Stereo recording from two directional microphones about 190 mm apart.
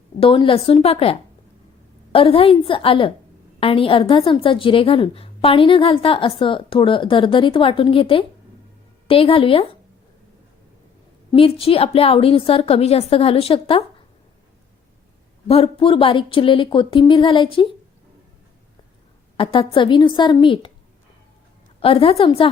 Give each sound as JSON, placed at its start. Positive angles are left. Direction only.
{"t": 0.2, "sound": "a woman's voice", "side_deg": 30}
{"t": 2.1, "sound": "a woman's voice", "side_deg": 30}
{"t": 11.3, "sound": "a woman's voice", "side_deg": 30}
{"t": 15.4, "sound": "a woman's voice", "side_deg": 30}
{"t": 19.4, "sound": "a woman's voice", "side_deg": 25}
{"t": 21.8, "sound": "a woman's voice", "side_deg": 30}